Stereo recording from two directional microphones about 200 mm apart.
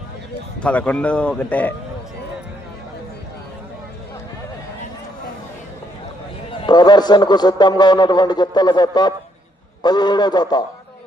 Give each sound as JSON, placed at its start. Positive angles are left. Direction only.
{"t": 0.6, "sound": "a man's voice", "side_deg": 5}
{"t": 6.5, "sound": "a man's voice", "side_deg": 25}